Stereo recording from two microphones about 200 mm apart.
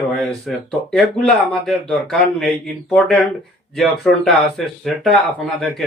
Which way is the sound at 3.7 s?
Centre (ahead or behind).